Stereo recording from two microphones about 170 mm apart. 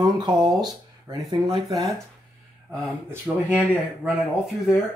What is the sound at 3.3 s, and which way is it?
Speech, 10° right (ahead or behind).